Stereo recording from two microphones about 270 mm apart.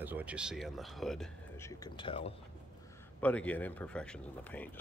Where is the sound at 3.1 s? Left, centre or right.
Centre.